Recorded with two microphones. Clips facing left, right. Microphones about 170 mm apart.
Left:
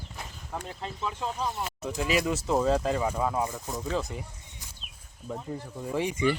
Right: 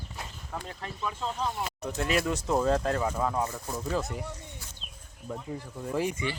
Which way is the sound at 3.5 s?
Centre (ahead or behind).